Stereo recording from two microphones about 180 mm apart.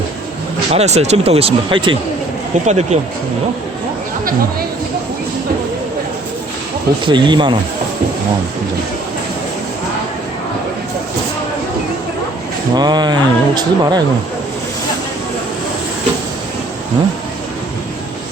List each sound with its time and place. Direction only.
0.7 s speech: 35° right (ahead or behind)
7.0 s speech: 25° right (ahead or behind)
12.7 s speech: 25° right (ahead or behind)